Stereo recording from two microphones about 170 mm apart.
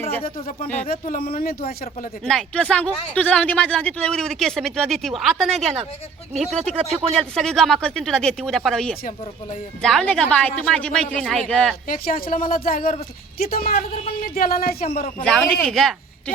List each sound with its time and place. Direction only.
0.9 s speech: 55° left (ahead or behind)
2.2 s speech: 5° left (ahead or behind)
7.1 s speech: 5° left (ahead or behind)
11.9 s speech: 55° left (ahead or behind)
15.2 s speech: 5° left (ahead or behind)